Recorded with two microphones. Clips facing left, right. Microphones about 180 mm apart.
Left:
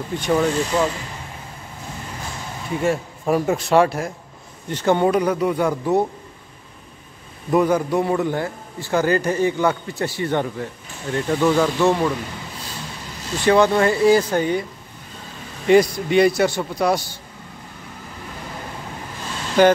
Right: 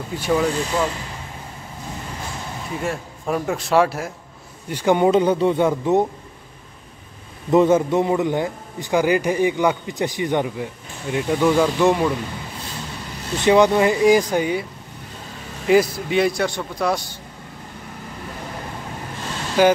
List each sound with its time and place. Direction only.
0.3 s a man's voice: 5° left (ahead or behind)
2.8 s a man's voice: 5° left (ahead or behind)
4.6 s a man's voice: 10° right (ahead or behind)
5.1 s a man's voice: 25° right (ahead or behind)
7.5 s a man's voice: 25° right (ahead or behind); by 12.1 s 5° right (ahead or behind)
13.5 s a man's voice: 15° right (ahead or behind); by 17.0 s centre (ahead or behind)
19.6 s a man's voice: 5° right (ahead or behind)